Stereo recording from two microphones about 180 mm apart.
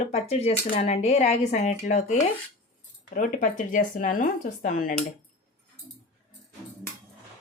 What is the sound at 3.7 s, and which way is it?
Speech, 45° left (ahead or behind).